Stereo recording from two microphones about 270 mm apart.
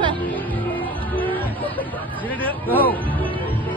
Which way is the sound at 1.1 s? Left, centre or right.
Centre.